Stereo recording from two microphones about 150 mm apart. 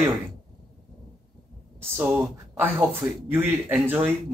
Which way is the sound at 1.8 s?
15° right (ahead or behind).